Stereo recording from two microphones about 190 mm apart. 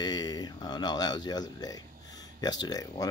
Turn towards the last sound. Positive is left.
turn(degrees=20)  # may be behind; listen again after turning